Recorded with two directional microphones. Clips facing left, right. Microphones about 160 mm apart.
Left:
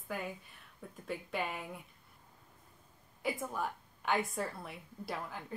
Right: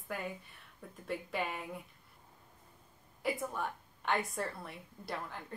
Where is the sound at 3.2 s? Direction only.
Centre (ahead or behind).